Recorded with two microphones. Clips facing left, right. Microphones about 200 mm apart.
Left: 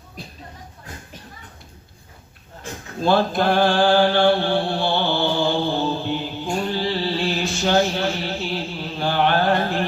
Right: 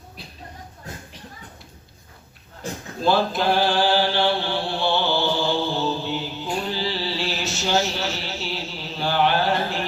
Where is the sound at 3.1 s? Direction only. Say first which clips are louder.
Left 2 dB; 55° left (ahead or behind).